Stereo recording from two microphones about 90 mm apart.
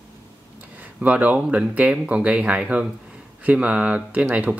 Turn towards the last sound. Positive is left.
turn(degrees=-10)  # may be behind; listen again after turning